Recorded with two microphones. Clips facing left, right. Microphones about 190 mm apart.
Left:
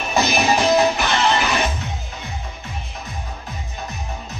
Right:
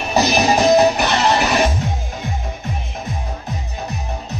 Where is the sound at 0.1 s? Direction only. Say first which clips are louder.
Right 3 dB; 40° right (ahead or behind).